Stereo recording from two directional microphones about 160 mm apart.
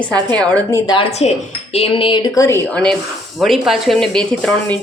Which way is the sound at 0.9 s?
35° left (ahead or behind).